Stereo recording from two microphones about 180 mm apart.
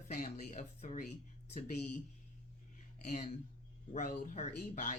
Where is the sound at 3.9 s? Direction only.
45° left (ahead or behind).